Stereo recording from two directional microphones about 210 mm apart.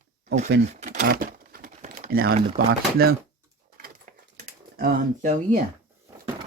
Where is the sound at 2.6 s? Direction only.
45° right (ahead or behind).